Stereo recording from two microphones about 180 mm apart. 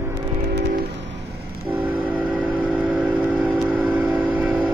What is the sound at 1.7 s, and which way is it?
Vehicle, 10° right (ahead or behind).